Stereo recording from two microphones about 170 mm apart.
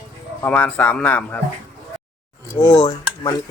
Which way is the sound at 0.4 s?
10° left (ahead or behind).